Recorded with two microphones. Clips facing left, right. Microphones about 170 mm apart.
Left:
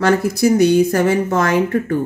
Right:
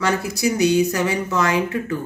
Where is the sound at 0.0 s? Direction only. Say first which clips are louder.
Left 6 dB; 55° left (ahead or behind).